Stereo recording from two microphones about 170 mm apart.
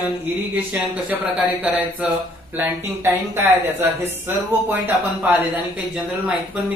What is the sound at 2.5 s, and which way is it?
Speech, 15° right (ahead or behind).